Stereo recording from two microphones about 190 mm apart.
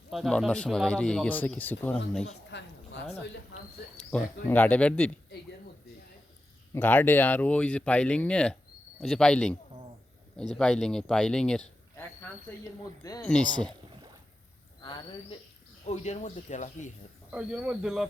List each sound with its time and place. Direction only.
0.1 s speech: centre (ahead or behind)
2.2 s a sound: 70° left (ahead or behind)
3.9 s speech: 10° left (ahead or behind)
6.7 s speech: 10° left (ahead or behind)
13.0 s speech: 20° left (ahead or behind)
15.9 s speech: 35° left (ahead or behind)
17.3 s speech: 5° right (ahead or behind)